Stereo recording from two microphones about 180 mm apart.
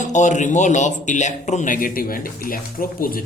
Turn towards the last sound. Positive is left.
turn(degrees=55)  # may be behind; listen again after turning